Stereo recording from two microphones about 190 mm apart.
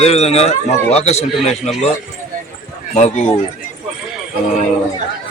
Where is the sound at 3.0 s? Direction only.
40° left (ahead or behind).